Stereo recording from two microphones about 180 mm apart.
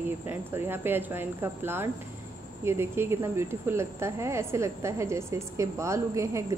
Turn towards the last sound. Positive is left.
turn(degrees=-15)  # may be behind; listen again after turning